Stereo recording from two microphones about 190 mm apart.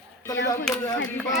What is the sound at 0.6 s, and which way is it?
Speech, 10° left (ahead or behind).